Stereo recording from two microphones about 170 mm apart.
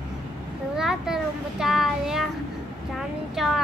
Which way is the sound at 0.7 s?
5° right (ahead or behind).